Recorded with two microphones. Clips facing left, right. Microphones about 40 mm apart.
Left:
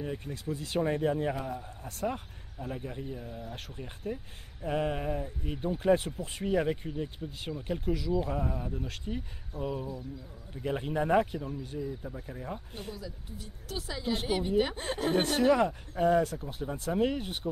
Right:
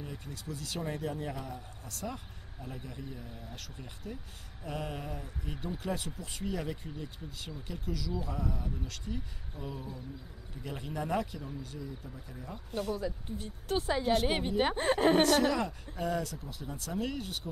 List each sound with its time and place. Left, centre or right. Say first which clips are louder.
0.0 s a man's voice: left 7 dB; left
12.9 s a woman's voice: right 7 dB; right
15.4 s a man's voice: left 6 dB; left